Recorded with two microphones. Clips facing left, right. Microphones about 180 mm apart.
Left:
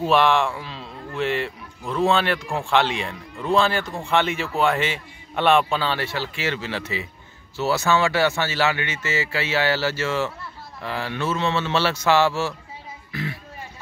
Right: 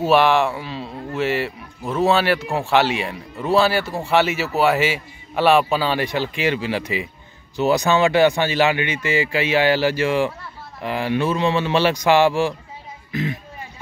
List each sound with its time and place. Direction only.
0.0 s speech: 5° right (ahead or behind)